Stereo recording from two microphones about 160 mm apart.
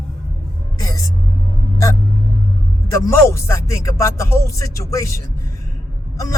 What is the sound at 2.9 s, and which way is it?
Speech, 20° left (ahead or behind).